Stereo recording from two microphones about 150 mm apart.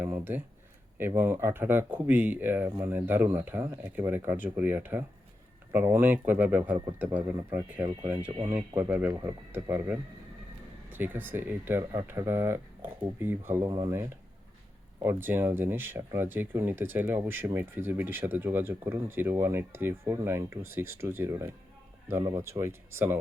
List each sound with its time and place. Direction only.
0.0 s speech: 10° right (ahead or behind)